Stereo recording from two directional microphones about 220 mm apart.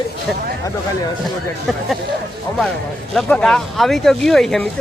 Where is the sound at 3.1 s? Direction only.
5° left (ahead or behind).